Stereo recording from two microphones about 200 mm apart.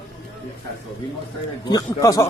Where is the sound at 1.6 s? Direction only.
20° left (ahead or behind).